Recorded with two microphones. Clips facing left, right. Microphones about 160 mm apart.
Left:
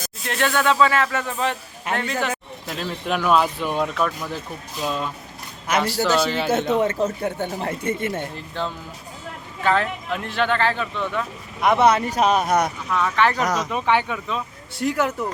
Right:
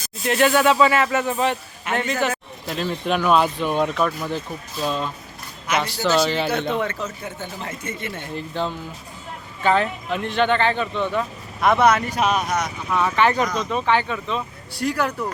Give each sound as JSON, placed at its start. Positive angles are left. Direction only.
{"t": 0.3, "sound": "speech", "side_deg": -10}
{"t": 6.5, "sound": "a man's voice", "side_deg": 45}
{"t": 7.9, "sound": "a man's voice", "side_deg": 50}
{"t": 8.4, "sound": "speech", "side_deg": 0}
{"t": 11.6, "sound": "speech", "side_deg": 15}
{"t": 11.9, "sound": "speech", "side_deg": 30}
{"t": 12.5, "sound": "speech", "side_deg": 55}
{"t": 12.9, "sound": "speech", "side_deg": -5}
{"t": 13.4, "sound": "speech", "side_deg": 80}
{"t": 13.7, "sound": "speech", "side_deg": 10}
{"t": 14.8, "sound": "speech", "side_deg": 20}